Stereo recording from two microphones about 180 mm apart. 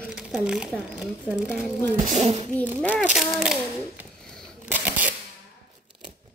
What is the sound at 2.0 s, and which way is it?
Speech, 40° right (ahead or behind).